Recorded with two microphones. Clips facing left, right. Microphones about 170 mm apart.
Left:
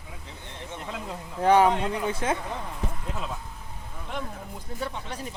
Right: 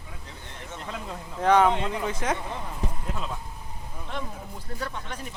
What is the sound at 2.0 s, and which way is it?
Speech, 25° left (ahead or behind).